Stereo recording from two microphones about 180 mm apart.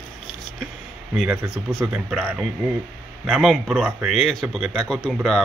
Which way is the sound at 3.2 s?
5° right (ahead or behind).